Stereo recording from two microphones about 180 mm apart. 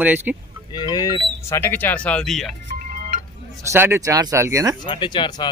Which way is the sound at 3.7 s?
15° right (ahead or behind).